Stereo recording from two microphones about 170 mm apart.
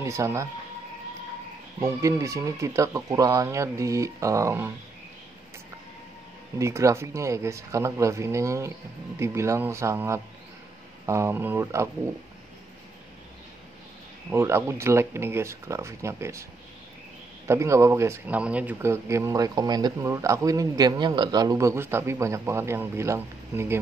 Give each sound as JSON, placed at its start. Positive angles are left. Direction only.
{"t": 0.0, "sound": "speech", "side_deg": -15}
{"t": 1.8, "sound": "speech", "side_deg": -20}
{"t": 6.6, "sound": "speech", "side_deg": -15}
{"t": 14.3, "sound": "speech", "side_deg": -15}
{"t": 17.5, "sound": "speech", "side_deg": -15}